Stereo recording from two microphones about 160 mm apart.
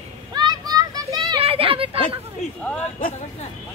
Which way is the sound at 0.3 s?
25° right (ahead or behind).